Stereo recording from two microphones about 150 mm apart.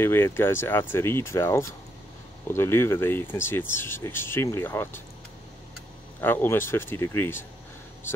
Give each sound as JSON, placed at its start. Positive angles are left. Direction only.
{"t": 0.0, "sound": "speech", "side_deg": 15}
{"t": 6.2, "sound": "speech", "side_deg": 15}